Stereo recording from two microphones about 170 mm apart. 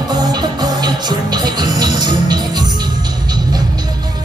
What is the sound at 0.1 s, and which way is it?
Music, 25° right (ahead or behind).